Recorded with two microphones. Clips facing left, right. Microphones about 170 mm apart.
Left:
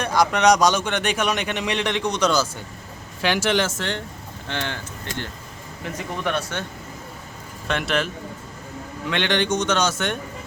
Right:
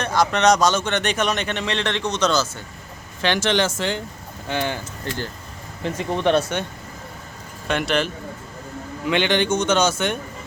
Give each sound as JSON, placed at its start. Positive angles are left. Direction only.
{"t": 0.0, "sound": "a man's voice", "side_deg": 10}
{"t": 5.8, "sound": "speech", "side_deg": -30}
{"t": 7.7, "sound": "a man's voice", "side_deg": 0}